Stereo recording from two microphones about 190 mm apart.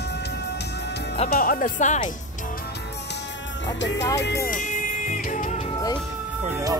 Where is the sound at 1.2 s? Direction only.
50° left (ahead or behind).